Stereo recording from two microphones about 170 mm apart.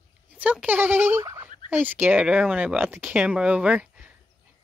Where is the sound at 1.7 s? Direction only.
10° right (ahead or behind).